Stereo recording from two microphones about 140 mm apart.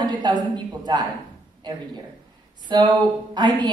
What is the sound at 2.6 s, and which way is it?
A woman's voice, 30° right (ahead or behind).